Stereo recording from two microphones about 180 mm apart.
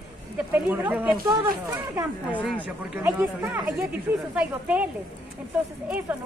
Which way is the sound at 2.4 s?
10° left (ahead or behind).